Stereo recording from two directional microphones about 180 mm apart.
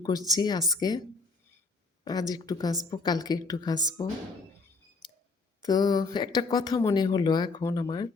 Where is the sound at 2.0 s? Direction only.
20° left (ahead or behind).